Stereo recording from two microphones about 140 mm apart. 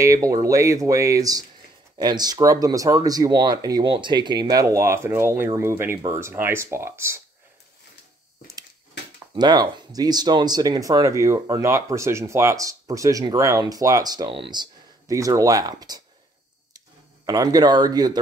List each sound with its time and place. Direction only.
0.0 s speech: 25° right (ahead or behind)
9.3 s speech: 30° right (ahead or behind)
17.3 s speech: 25° right (ahead or behind)